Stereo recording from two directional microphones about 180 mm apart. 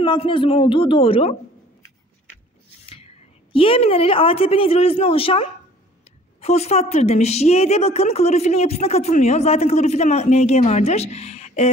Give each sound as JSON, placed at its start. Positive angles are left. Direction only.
{"t": 0.0, "sound": "speech", "side_deg": 25}
{"t": 3.5, "sound": "a woman's voice", "side_deg": 30}